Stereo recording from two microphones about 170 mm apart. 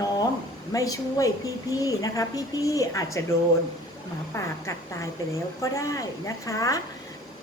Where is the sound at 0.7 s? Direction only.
20° left (ahead or behind).